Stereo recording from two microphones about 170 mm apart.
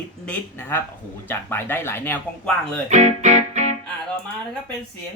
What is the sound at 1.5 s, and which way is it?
Speech, 15° left (ahead or behind).